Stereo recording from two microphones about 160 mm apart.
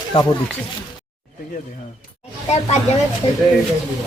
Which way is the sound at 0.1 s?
35° left (ahead or behind).